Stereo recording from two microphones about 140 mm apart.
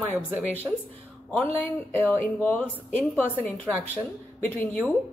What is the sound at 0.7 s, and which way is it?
Speech, 15° right (ahead or behind).